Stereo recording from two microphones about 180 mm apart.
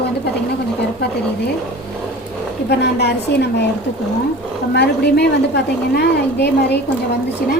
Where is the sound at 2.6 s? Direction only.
65° left (ahead or behind).